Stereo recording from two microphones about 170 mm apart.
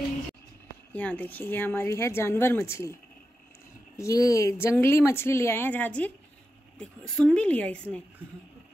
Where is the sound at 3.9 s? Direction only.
20° left (ahead or behind).